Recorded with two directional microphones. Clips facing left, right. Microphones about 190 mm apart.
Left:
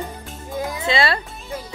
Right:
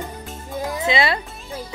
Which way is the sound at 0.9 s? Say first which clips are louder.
Even; 15° right (ahead or behind).